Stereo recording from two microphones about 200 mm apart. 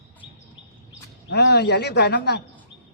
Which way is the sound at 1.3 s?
55° left (ahead or behind).